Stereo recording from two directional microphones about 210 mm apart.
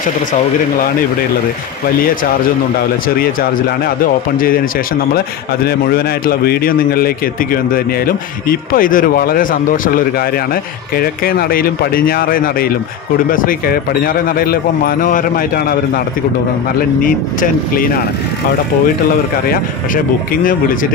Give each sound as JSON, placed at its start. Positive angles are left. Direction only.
{"t": 4.0, "sound": "speech", "side_deg": 45}
{"t": 5.7, "sound": "speech", "side_deg": 45}
{"t": 17.0, "sound": "speech", "side_deg": 40}